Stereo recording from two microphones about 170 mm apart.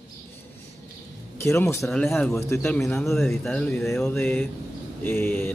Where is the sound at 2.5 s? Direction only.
15° left (ahead or behind).